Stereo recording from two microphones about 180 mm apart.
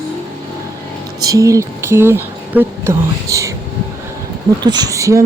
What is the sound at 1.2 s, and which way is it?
Speech, 20° right (ahead or behind).